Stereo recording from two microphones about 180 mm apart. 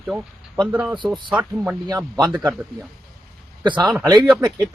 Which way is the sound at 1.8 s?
25° right (ahead or behind).